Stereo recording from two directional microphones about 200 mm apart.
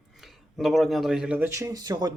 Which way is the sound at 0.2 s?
Centre (ahead or behind).